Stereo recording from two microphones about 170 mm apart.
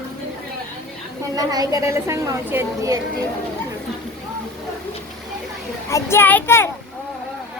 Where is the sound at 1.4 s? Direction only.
20° right (ahead or behind).